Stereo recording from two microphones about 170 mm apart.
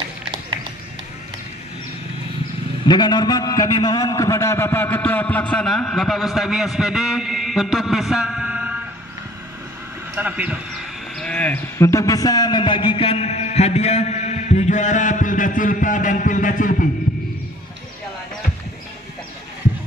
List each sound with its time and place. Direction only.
2.9 s a man's voice: 25° left (ahead or behind); by 8.7 s 5° right (ahead or behind)
10.1 s speech: 10° right (ahead or behind)
11.1 s a man's voice: 5° left (ahead or behind); by 16.9 s 50° left (ahead or behind)